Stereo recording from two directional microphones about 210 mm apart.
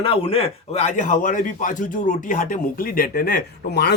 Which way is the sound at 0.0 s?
25° left (ahead or behind).